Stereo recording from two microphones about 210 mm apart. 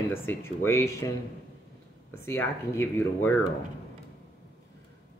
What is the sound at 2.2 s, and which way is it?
Speech, 10° left (ahead or behind).